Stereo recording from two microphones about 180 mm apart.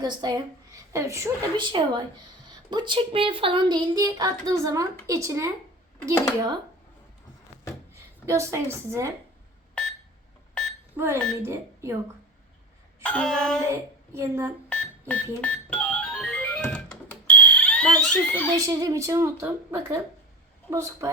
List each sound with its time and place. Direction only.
0.0 s speech: 20° right (ahead or behind)
8.3 s speech: 15° right (ahead or behind)
10.9 s speech: 15° right (ahead or behind)
13.0 s a sound: 5° left (ahead or behind)
13.7 s a woman's voice: 15° right (ahead or behind)
14.7 s a sound: 5° left (ahead or behind)
15.4 s music: 5° left (ahead or behind)
18.5 s speech: 20° right (ahead or behind)